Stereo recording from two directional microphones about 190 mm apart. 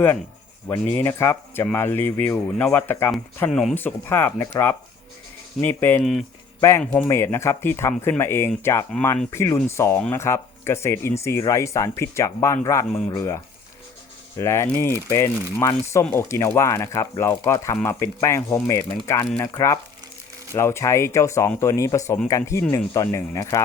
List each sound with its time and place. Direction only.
0.7 s speech: 15° left (ahead or behind)
6.6 s speech: 15° left (ahead or behind)